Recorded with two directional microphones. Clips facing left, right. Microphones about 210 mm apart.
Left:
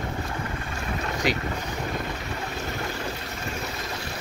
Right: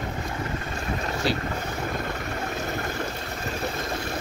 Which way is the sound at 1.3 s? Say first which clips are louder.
Even; 15° left (ahead or behind).